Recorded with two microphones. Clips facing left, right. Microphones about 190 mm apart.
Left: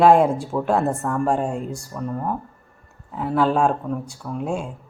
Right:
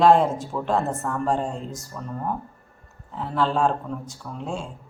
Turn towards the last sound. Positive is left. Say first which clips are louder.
# left 5 dB
turn(degrees=15)  # may be behind; listen again after turning